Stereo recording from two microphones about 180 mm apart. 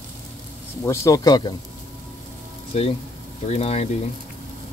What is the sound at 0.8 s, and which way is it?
Speech, 15° left (ahead or behind).